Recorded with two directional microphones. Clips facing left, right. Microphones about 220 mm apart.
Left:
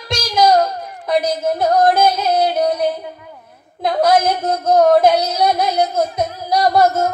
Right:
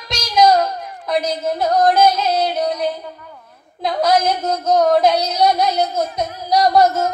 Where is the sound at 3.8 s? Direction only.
55° left (ahead or behind).